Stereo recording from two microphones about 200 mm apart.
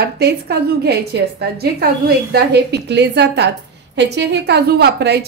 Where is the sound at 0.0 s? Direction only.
55° right (ahead or behind).